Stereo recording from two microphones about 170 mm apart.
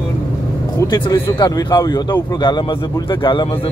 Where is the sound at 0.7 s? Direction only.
25° left (ahead or behind).